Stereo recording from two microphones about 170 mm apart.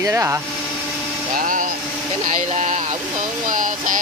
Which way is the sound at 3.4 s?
50° right (ahead or behind).